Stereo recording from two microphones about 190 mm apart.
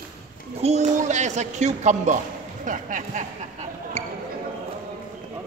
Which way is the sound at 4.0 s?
35° right (ahead or behind).